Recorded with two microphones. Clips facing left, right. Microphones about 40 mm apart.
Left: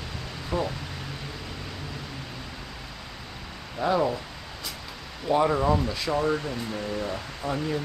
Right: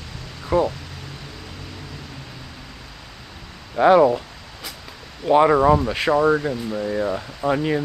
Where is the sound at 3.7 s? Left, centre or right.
Right.